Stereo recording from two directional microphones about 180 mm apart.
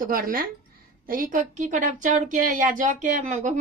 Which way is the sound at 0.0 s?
55° right (ahead or behind).